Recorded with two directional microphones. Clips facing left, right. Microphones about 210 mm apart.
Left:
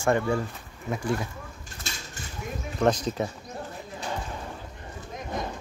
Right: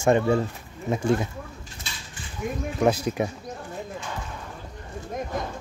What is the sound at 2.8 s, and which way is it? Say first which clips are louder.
Speech: right 1 dB; 10° right (ahead or behind).